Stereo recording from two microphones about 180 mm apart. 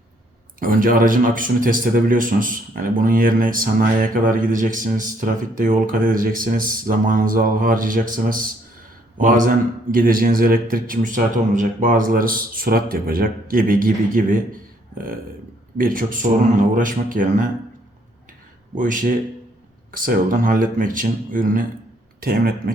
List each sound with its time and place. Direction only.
0.6 s a man's voice: 50° right (ahead or behind)
18.7 s a man's voice: 45° right (ahead or behind)